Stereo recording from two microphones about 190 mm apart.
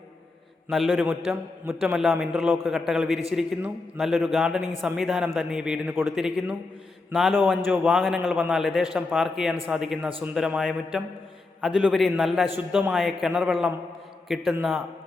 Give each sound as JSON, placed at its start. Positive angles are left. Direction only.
{"t": 0.7, "sound": "a man's voice", "side_deg": 0}